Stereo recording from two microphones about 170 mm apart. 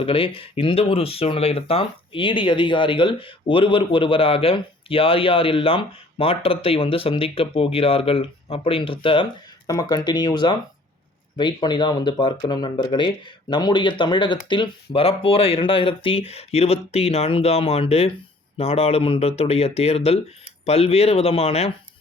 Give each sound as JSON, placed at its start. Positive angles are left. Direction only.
{"t": 0.0, "sound": "speech", "side_deg": 35}